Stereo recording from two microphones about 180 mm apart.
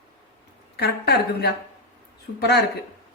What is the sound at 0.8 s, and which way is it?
Speech, 60° left (ahead or behind).